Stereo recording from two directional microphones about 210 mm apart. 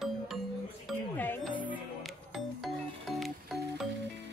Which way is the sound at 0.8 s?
10° left (ahead or behind).